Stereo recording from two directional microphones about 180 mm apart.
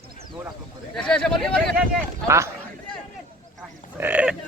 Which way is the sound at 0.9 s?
5° left (ahead or behind).